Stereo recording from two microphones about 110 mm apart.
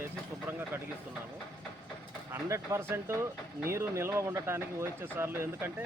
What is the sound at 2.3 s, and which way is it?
Speech, 25° right (ahead or behind).